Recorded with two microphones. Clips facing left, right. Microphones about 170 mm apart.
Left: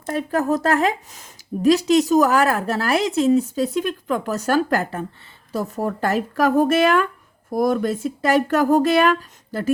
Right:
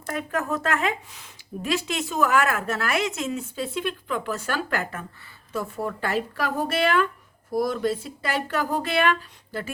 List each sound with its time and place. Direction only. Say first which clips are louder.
0.0 s speech: left 6 dB; 30° left (ahead or behind)